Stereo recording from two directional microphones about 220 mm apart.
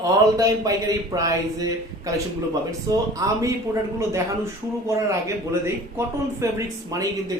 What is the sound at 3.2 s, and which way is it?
Speech, 15° right (ahead or behind).